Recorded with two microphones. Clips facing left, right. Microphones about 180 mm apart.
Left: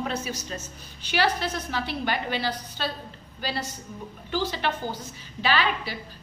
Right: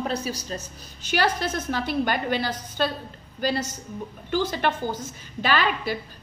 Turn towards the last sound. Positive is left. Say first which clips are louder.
# right 2 dB
turn(degrees=-50)  # may be behind; listen again after turning